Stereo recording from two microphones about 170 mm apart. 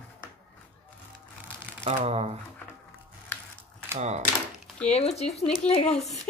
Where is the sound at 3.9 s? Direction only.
40° right (ahead or behind).